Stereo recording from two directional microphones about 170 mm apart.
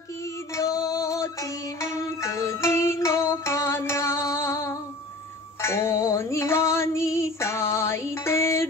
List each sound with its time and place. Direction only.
0.6 s music: 20° left (ahead or behind)